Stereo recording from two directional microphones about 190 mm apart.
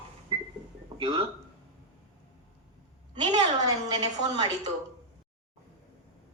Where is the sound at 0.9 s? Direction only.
25° right (ahead or behind).